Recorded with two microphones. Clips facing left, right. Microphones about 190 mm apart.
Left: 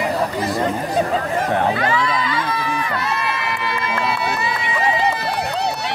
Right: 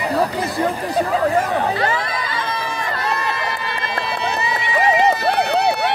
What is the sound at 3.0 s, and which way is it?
Run, 35° right (ahead or behind).